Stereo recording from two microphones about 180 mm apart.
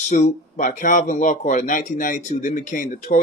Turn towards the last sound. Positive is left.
turn(degrees=45)  # may be behind; listen again after turning